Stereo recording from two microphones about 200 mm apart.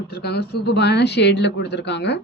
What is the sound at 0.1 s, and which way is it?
A woman's voice, 55° left (ahead or behind).